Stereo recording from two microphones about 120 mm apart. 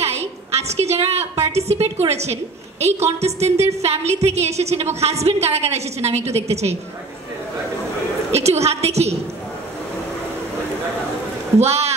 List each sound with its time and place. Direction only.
0.0 s a woman's voice: 65° right (ahead or behind)
8.3 s a woman's voice: 65° right (ahead or behind)
11.6 s a woman's voice: 60° right (ahead or behind)